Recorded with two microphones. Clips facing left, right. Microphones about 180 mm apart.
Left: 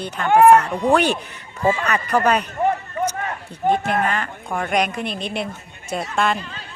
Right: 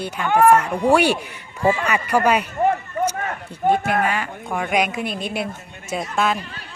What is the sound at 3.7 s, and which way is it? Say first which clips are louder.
Speech: right 1 dB; 50° right (ahead or behind).